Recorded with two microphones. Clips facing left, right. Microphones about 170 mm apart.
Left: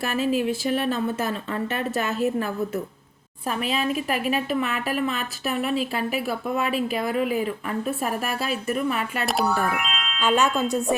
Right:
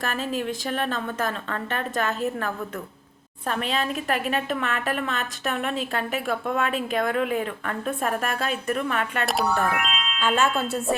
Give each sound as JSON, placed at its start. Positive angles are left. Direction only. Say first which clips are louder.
{"t": 0.0, "sound": "speech", "louder": "left 4 dB", "side_deg": 10}
{"t": 3.6, "sound": "a woman's voice", "louder": "left 3 dB", "side_deg": 5}
{"t": 10.2, "sound": "speech", "louder": "left 2 dB", "side_deg": 15}